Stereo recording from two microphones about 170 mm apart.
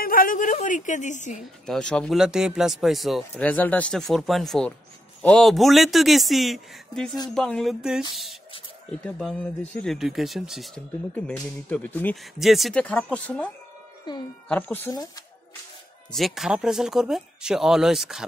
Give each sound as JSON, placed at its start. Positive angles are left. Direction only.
{"t": 0.0, "sound": "a woman's voice", "side_deg": 55}
{"t": 1.7, "sound": "speech", "side_deg": 5}
{"t": 3.4, "sound": "speech", "side_deg": 10}
{"t": 9.0, "sound": "speech", "side_deg": 5}
{"t": 14.5, "sound": "speech", "side_deg": 10}
{"t": 16.1, "sound": "speech", "side_deg": 0}